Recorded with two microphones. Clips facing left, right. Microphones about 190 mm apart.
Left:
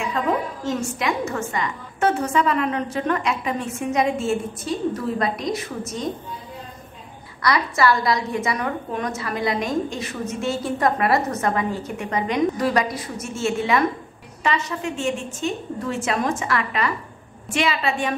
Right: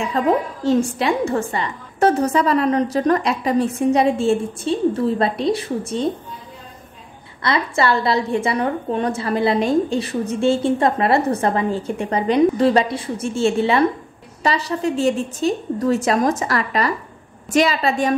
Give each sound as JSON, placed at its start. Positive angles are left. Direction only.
{"t": 0.2, "sound": "a woman's voice", "side_deg": -35}
{"t": 7.4, "sound": "a woman's voice", "side_deg": -25}